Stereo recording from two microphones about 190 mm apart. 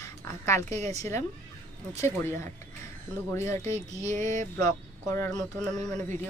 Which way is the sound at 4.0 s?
40° right (ahead or behind).